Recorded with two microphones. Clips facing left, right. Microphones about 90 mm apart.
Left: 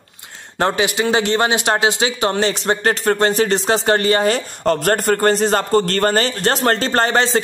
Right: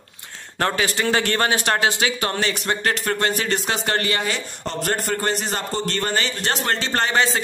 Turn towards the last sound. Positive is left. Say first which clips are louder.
# left 4 dB
turn(degrees=40)  # may be behind; listen again after turning